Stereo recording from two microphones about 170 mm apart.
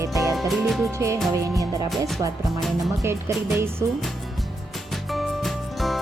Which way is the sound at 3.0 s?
15° right (ahead or behind).